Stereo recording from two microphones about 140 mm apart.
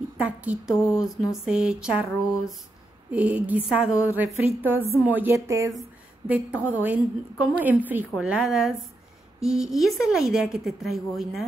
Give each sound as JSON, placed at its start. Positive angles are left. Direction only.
{"t": 0.2, "sound": "a woman's voice", "side_deg": -10}
{"t": 5.7, "sound": "a sound", "side_deg": 0}
{"t": 6.3, "sound": "a woman's voice", "side_deg": -10}